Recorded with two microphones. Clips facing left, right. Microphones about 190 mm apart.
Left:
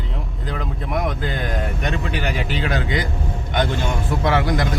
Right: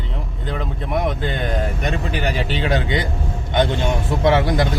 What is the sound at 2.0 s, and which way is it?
Speech, 35° right (ahead or behind).